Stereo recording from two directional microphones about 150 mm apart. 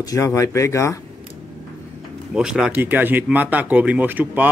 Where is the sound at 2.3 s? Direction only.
5° right (ahead or behind).